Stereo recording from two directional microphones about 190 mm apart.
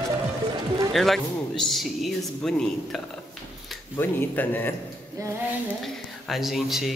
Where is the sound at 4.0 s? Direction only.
10° left (ahead or behind).